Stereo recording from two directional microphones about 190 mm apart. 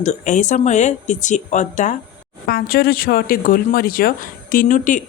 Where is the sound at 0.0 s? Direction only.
40° left (ahead or behind).